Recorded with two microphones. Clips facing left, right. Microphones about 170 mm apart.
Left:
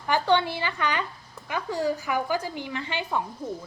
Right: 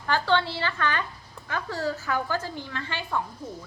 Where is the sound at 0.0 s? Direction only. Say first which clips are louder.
Left 2 dB; 15° left (ahead or behind).